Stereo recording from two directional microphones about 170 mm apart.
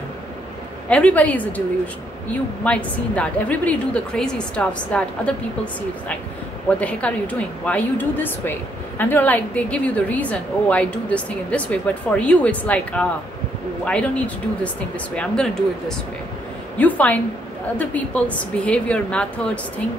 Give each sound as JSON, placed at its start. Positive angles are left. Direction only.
{"t": 0.8, "sound": "a woman's voice", "side_deg": 10}
{"t": 2.6, "sound": "a woman's voice", "side_deg": 5}
{"t": 6.8, "sound": "a woman's voice", "side_deg": 5}
{"t": 16.7, "sound": "a woman's voice", "side_deg": 10}